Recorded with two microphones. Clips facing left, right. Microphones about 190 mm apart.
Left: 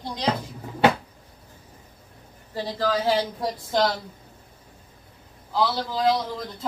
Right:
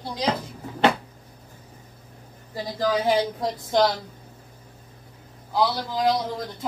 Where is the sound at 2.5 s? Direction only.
15° right (ahead or behind).